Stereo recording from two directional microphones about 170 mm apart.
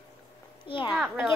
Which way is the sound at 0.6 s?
30° left (ahead or behind).